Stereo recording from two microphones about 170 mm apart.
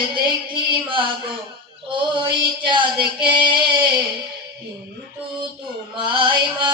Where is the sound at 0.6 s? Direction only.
30° right (ahead or behind).